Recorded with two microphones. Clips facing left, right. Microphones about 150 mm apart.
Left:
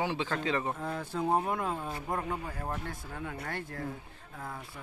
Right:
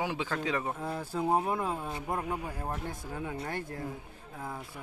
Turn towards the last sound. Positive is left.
turn(degrees=-10)  # may be behind; listen again after turning